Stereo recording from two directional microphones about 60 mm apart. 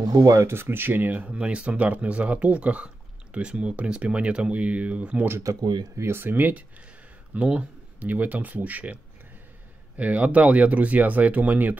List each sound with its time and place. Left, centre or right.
0.0 s speech: right
0.4 s speech: right
1.3 s speech: centre
5.4 s speech: right
6.0 s speech: right
7.3 s speech: right
9.9 s speech: right